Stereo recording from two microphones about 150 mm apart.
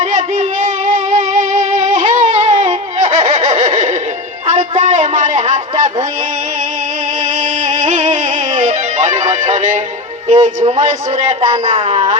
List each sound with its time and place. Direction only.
0.0 s music: 50° right (ahead or behind)
4.4 s a sound: 50° right (ahead or behind)
7.3 s music: 55° right (ahead or behind)
10.2 s speech: 50° right (ahead or behind)
11.4 s speech: 35° right (ahead or behind)